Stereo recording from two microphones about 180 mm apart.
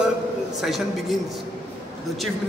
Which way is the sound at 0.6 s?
Centre (ahead or behind).